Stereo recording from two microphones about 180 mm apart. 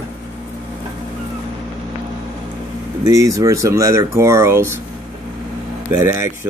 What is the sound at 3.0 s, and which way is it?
Speech, 20° right (ahead or behind).